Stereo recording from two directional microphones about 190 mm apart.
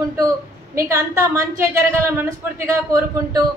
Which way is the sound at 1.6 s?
15° right (ahead or behind).